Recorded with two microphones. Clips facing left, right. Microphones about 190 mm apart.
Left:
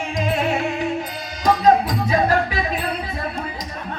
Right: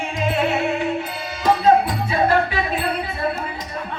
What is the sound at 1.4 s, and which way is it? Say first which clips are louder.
Music: even; 40° left (ahead or behind).